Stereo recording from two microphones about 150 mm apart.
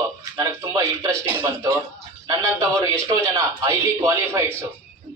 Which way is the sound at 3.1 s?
20° right (ahead or behind).